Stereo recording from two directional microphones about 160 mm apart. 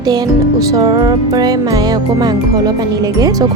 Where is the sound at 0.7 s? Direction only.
25° right (ahead or behind).